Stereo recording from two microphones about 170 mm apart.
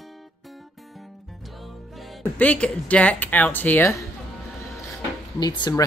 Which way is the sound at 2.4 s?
10° left (ahead or behind).